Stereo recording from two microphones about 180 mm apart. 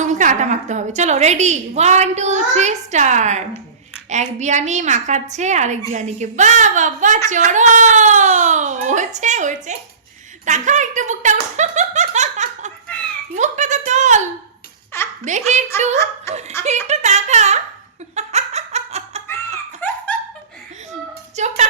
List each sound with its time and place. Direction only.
0.0 s a woman's voice: 45° right (ahead or behind)
13.3 s a sound: 40° right (ahead or behind)
15.2 s a woman's voice: 40° right (ahead or behind)
16.3 s speech: 15° left (ahead or behind)
16.6 s a woman's voice: 40° right (ahead or behind)
18.1 s giggle: 35° right (ahead or behind)
19.8 s laughter: 10° left (ahead or behind)
21.3 s speech: 40° right (ahead or behind)